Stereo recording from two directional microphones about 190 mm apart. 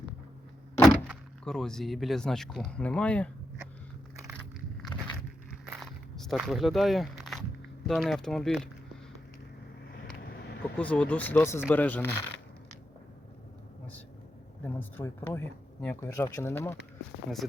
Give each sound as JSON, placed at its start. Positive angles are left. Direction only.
{"t": 0.8, "sound": "speech", "side_deg": 0}
{"t": 5.7, "sound": "walk", "side_deg": 0}
{"t": 7.9, "sound": "speech", "side_deg": 0}
{"t": 10.2, "sound": "vehicle", "side_deg": 55}
{"t": 10.6, "sound": "speech", "side_deg": 5}
{"t": 14.8, "sound": "speech", "side_deg": 10}